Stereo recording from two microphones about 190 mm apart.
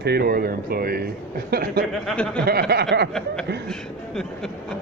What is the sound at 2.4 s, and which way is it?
Speech, 55° right (ahead or behind).